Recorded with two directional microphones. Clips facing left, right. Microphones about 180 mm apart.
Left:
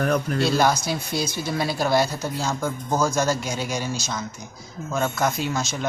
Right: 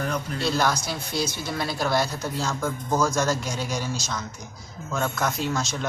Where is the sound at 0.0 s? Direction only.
55° left (ahead or behind).